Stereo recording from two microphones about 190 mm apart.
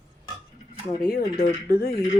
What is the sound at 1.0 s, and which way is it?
Speech, 50° left (ahead or behind).